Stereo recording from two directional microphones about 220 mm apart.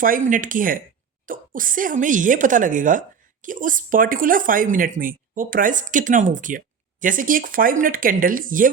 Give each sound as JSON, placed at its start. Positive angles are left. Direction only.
{"t": 0.0, "sound": "speech", "side_deg": -35}